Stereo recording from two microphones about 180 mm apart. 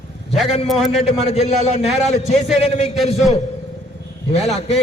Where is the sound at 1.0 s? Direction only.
35° left (ahead or behind).